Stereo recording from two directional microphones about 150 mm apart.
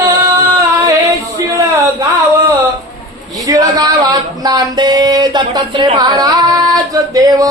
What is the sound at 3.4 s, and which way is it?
Speech, 25° right (ahead or behind).